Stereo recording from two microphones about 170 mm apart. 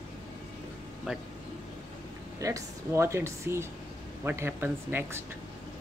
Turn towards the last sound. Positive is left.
turn(degrees=-10)  # may be behind; listen again after turning